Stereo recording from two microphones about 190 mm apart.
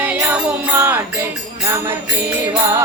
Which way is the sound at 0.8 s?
10° right (ahead or behind).